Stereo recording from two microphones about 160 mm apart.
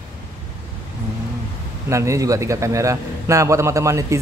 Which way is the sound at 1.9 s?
20° right (ahead or behind).